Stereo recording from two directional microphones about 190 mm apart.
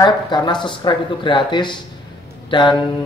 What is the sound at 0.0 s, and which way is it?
A man's voice, 20° left (ahead or behind).